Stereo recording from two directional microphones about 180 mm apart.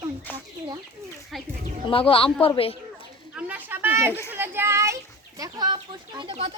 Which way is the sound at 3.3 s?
10° right (ahead or behind).